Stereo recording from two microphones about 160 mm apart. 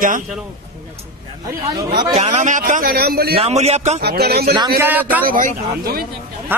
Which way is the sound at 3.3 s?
40° right (ahead or behind).